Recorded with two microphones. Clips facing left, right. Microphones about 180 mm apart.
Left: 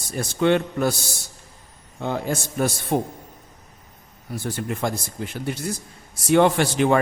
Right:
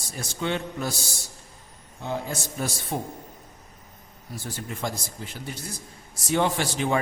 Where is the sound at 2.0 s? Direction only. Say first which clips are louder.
Left 5 dB; 65° left (ahead or behind).